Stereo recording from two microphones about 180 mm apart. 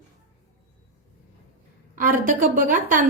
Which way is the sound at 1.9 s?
50° right (ahead or behind).